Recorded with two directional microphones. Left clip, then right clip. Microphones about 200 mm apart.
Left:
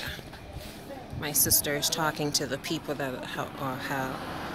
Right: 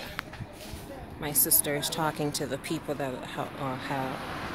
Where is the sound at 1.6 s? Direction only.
10° right (ahead or behind).